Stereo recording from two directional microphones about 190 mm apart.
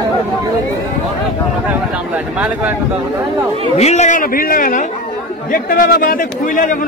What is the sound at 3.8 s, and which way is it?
A man's voice, 35° left (ahead or behind).